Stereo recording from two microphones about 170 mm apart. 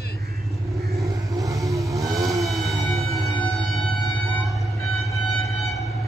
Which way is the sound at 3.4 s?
Centre (ahead or behind).